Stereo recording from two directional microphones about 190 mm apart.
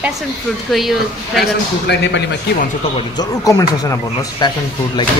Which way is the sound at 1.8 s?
65° left (ahead or behind).